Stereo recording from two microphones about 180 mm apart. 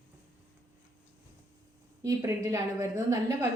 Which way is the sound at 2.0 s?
15° right (ahead or behind).